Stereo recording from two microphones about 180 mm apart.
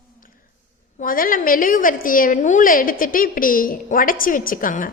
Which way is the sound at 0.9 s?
50° left (ahead or behind).